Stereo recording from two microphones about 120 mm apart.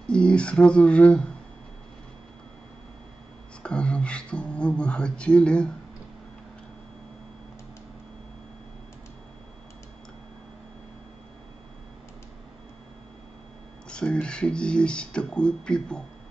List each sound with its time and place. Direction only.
0.1 s speech: 10° left (ahead or behind)
3.6 s speech: 10° left (ahead or behind)
13.8 s speech: 10° left (ahead or behind)